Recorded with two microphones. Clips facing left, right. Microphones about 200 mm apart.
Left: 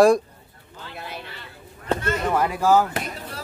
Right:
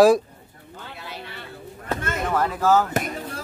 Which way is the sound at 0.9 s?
55° left (ahead or behind).